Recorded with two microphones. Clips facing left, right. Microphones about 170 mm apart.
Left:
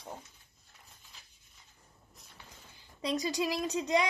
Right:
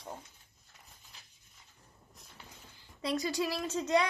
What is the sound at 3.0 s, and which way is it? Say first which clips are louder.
Speech: even; 20° left (ahead or behind).